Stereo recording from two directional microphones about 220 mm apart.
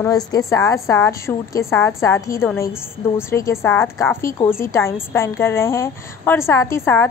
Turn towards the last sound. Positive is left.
turn(degrees=10)  # may be behind; listen again after turning